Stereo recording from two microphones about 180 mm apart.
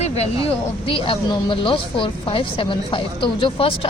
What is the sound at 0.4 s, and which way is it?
Speech, 30° left (ahead or behind).